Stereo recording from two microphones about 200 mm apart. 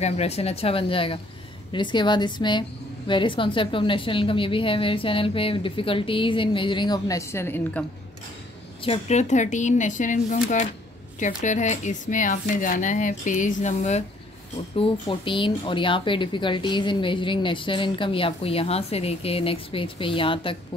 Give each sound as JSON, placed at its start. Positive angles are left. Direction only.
{"t": 0.0, "sound": "speech", "side_deg": 30}
{"t": 8.8, "sound": "speech", "side_deg": 30}